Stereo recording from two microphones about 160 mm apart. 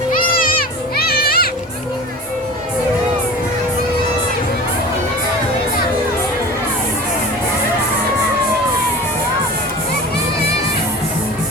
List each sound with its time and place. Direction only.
0.9 s children playing: 75° left (ahead or behind)